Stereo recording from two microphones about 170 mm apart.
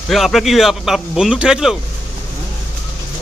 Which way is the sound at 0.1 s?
Centre (ahead or behind).